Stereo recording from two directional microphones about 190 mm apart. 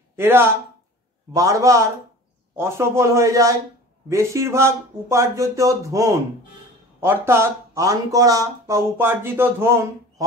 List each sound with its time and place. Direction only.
0.1 s speech: 10° right (ahead or behind)